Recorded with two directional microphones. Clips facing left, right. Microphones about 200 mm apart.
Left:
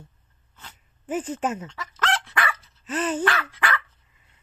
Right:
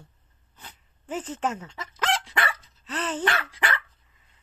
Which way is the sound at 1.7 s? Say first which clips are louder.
Left 1 dB; 15° right (ahead or behind).